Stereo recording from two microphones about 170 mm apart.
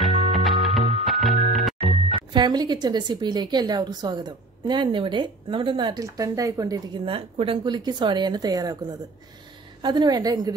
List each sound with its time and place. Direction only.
0.0 s music: centre (ahead or behind)
2.1 s a woman's voice: 25° right (ahead or behind)
7.1 s a woman's voice: 30° right (ahead or behind)
9.8 s a woman's voice: 25° right (ahead or behind)